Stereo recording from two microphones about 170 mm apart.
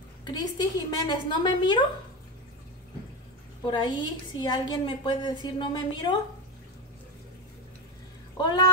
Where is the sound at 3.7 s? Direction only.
25° left (ahead or behind).